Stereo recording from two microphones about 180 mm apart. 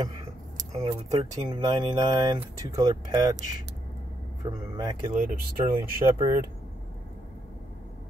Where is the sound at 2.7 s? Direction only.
20° right (ahead or behind).